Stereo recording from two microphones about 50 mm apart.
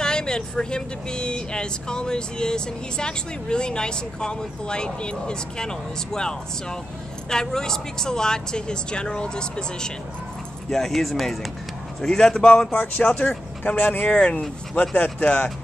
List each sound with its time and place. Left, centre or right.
0.0 s speech: centre
10.7 s speech: centre
12.7 s speech: left
14.0 s speech: left